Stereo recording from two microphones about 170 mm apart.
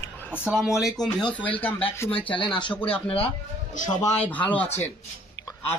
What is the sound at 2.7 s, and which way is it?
Speech, 10° left (ahead or behind).